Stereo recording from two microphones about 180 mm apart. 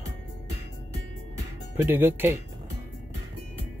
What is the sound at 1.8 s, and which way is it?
Speech, 10° right (ahead or behind).